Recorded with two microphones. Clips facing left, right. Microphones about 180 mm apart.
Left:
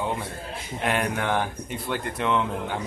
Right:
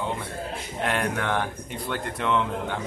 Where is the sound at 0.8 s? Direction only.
5° left (ahead or behind).